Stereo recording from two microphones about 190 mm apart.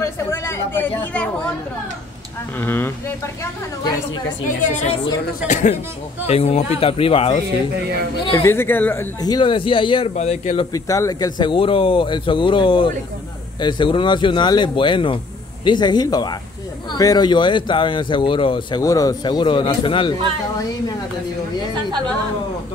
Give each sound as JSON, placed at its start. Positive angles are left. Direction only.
{"t": 0.0, "sound": "a sound", "side_deg": 15}
{"t": 2.6, "sound": "speech", "side_deg": 10}
{"t": 4.5, "sound": "speech", "side_deg": 40}
{"t": 8.4, "sound": "speech", "side_deg": 10}
{"t": 10.9, "sound": "speech", "side_deg": 20}